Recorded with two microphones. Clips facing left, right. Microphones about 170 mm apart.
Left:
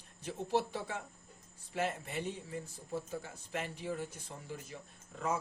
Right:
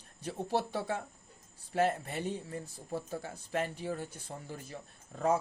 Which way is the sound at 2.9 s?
35° right (ahead or behind).